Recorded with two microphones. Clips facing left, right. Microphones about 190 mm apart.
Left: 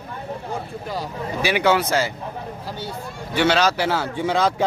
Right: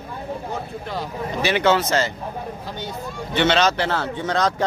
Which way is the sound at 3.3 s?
5° left (ahead or behind).